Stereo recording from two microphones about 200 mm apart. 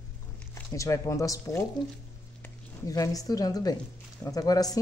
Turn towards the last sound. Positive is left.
turn(degrees=20)  # may be behind; listen again after turning